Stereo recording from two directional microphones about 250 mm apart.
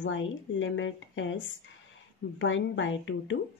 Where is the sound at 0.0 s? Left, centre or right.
Left.